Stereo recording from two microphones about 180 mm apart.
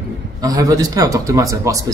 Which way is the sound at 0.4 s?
20° right (ahead or behind).